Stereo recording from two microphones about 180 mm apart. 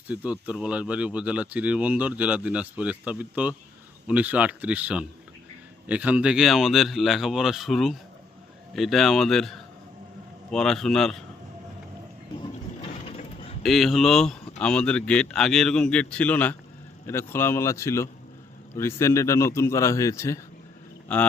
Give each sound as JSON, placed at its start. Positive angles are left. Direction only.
{"t": 0.1, "sound": "speech", "side_deg": -5}
{"t": 12.9, "sound": "a sound", "side_deg": 35}
{"t": 13.6, "sound": "a man's voice", "side_deg": 0}